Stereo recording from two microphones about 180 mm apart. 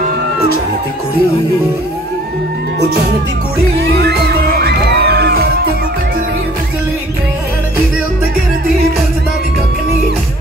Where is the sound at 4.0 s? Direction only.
60° right (ahead or behind).